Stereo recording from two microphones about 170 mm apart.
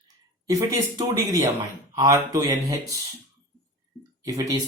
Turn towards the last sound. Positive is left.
turn(degrees=-20)  # may be behind; listen again after turning